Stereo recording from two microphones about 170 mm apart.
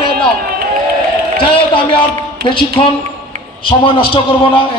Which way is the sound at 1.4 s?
30° left (ahead or behind).